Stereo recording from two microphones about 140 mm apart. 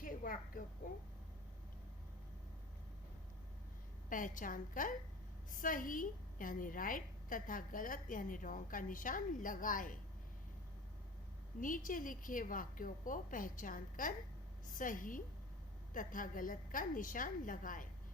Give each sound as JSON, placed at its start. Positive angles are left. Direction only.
{"t": 0.0, "sound": "a woman's voice", "side_deg": 80}
{"t": 4.1, "sound": "a woman's voice", "side_deg": 75}
{"t": 11.6, "sound": "a woman's voice", "side_deg": 70}